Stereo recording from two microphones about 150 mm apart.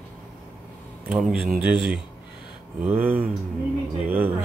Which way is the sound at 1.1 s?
5° right (ahead or behind).